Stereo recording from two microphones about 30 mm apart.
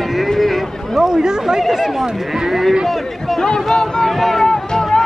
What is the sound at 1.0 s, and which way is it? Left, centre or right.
Speech, right.